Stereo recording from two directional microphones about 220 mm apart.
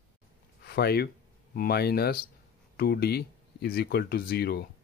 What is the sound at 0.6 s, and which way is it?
Speech, 45° left (ahead or behind).